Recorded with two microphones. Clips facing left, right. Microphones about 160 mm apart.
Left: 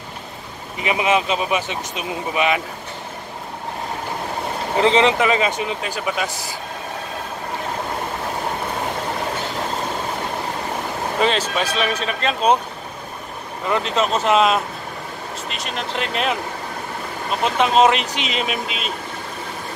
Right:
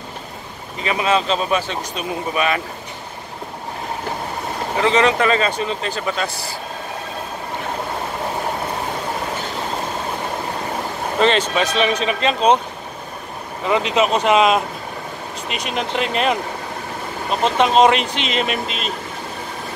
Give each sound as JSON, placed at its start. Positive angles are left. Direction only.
{"t": 0.7, "sound": "speech", "side_deg": 15}
{"t": 4.8, "sound": "speech", "side_deg": 25}
{"t": 5.2, "sound": "speech", "side_deg": 15}
{"t": 11.1, "sound": "speech", "side_deg": 5}
{"t": 13.7, "sound": "speech", "side_deg": -5}
{"t": 17.4, "sound": "speech", "side_deg": 5}